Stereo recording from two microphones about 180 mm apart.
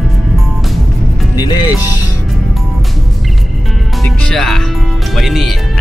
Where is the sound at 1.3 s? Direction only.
25° left (ahead or behind).